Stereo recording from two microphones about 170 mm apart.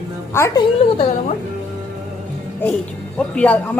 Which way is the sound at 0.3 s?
15° left (ahead or behind).